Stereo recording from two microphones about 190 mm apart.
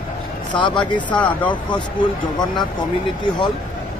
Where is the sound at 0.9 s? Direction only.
10° left (ahead or behind).